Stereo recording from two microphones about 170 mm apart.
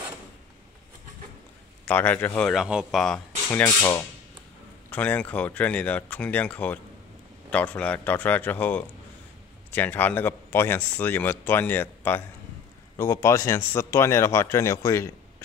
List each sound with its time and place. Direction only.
1.9 s speech: 10° left (ahead or behind)
3.4 s speech: 10° left (ahead or behind)